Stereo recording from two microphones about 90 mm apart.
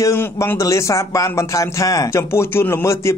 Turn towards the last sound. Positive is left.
turn(degrees=30)  # may be behind; listen again after turning